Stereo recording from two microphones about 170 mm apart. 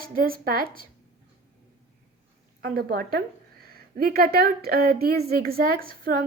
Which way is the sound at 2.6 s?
65° right (ahead or behind).